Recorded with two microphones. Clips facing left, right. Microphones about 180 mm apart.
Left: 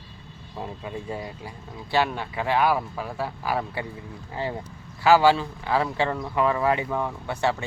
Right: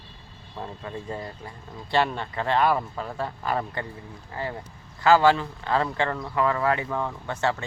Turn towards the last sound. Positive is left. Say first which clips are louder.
# left 1 dB
turn(degrees=10)  # may be behind; listen again after turning